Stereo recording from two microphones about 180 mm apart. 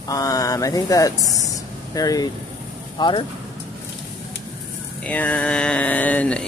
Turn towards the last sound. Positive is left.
turn(degrees=5)  # may be behind; listen again after turning